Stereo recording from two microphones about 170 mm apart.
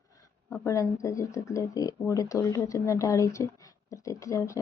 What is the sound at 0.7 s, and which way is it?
Speech, 20° left (ahead or behind).